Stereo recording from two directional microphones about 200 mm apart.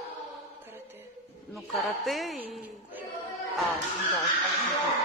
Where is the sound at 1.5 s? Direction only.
Centre (ahead or behind).